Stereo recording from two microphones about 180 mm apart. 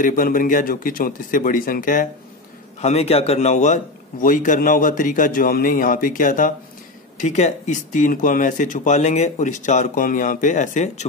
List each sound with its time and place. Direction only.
0.0 s speech: 50° left (ahead or behind)
2.8 s speech: 35° left (ahead or behind)